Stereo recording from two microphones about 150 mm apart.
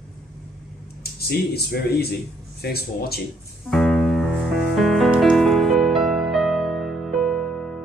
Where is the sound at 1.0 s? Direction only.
90° left.